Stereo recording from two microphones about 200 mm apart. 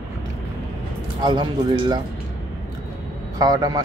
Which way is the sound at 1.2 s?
25° right (ahead or behind).